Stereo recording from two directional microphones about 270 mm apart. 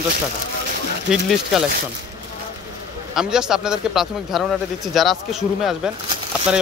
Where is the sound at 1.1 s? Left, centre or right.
Centre.